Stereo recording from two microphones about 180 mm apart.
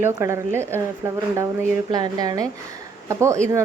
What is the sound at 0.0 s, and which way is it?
A woman's voice, 15° right (ahead or behind).